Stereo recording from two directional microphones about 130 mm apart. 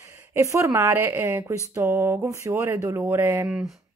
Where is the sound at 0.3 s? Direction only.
20° right (ahead or behind).